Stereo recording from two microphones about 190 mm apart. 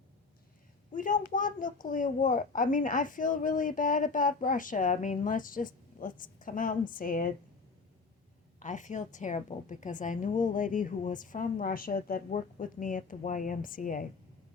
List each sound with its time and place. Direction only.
0.9 s a woman's voice: 45° left (ahead or behind)
8.5 s a woman's voice: 40° left (ahead or behind)